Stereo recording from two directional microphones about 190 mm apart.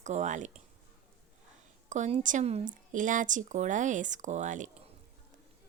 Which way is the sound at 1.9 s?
40° right (ahead or behind).